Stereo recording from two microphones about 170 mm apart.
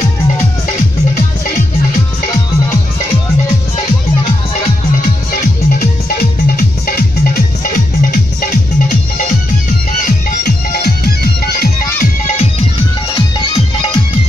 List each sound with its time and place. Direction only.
6.5 s music: 65° left (ahead or behind)
12.3 s music: 40° left (ahead or behind)
13.1 s music: 30° left (ahead or behind)